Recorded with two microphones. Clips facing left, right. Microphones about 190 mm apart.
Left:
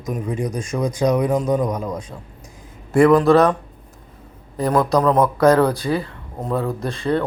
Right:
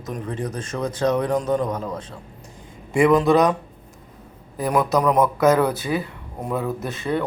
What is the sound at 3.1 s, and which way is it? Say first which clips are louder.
Speech: left 3 dB; 15° right (ahead or behind).